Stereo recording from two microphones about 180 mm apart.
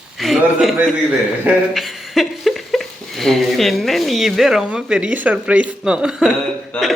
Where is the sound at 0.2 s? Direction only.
Centre (ahead or behind).